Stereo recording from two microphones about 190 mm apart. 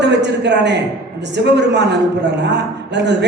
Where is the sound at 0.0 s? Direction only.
65° right (ahead or behind).